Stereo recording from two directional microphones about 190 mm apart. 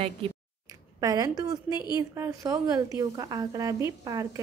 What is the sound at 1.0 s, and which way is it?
A woman's voice, 20° right (ahead or behind).